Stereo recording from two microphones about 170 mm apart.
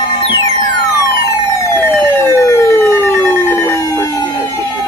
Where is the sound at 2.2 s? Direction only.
15° left (ahead or behind).